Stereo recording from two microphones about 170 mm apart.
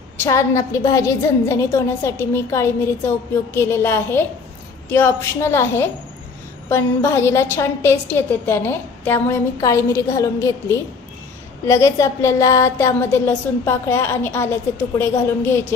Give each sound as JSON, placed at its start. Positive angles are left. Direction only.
{"t": 0.2, "sound": "a woman's voice", "side_deg": 15}